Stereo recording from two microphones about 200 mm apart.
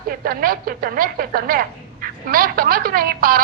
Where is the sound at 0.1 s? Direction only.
45° right (ahead or behind).